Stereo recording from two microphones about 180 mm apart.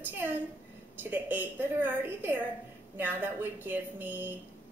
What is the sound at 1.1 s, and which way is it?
Female singing, 10° right (ahead or behind).